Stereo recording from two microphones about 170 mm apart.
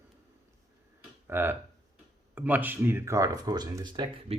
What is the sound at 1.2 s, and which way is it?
Speech, 15° right (ahead or behind).